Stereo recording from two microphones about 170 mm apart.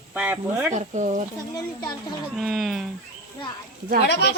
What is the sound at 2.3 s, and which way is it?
Speech, centre (ahead or behind).